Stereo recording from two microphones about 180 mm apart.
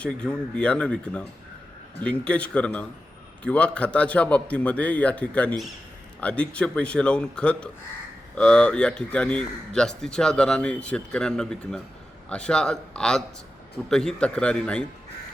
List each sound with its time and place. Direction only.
0.0 s a man's voice: 5° left (ahead or behind)